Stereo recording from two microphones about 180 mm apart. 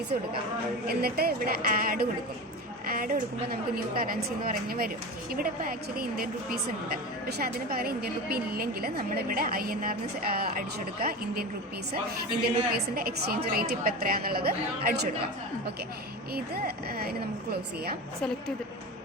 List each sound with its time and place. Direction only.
0.9 s a woman's voice: 60° right (ahead or behind)
12.4 s a woman's voice: 60° right (ahead or behind)
16.3 s a woman's voice: 60° right (ahead or behind)